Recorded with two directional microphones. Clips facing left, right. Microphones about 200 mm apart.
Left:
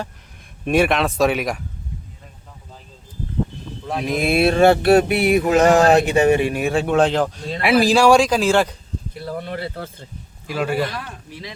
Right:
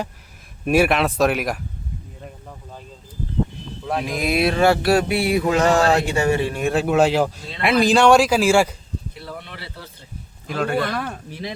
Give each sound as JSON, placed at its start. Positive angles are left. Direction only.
{"t": 0.6, "sound": "speech", "side_deg": -5}
{"t": 4.1, "sound": "speech", "side_deg": 25}
{"t": 6.6, "sound": "speech", "side_deg": 0}
{"t": 9.1, "sound": "a sound", "side_deg": 45}
{"t": 10.4, "sound": "speech", "side_deg": 5}
{"t": 10.8, "sound": "speech", "side_deg": -50}